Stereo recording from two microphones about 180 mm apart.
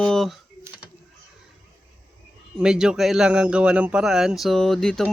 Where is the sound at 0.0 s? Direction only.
Centre (ahead or behind).